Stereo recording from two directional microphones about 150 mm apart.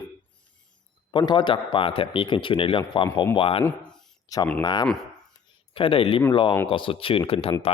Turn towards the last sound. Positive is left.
turn(degrees=40)  # may be behind; listen again after turning